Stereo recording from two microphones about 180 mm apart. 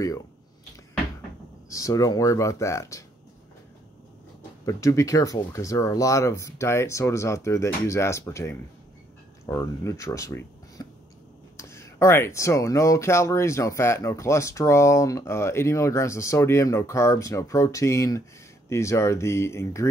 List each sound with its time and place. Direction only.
1.7 s speech: 20° left (ahead or behind)
4.6 s speech: 20° left (ahead or behind)